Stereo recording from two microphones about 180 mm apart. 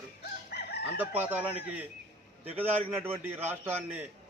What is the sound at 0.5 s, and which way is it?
Chicken, 65° left (ahead or behind).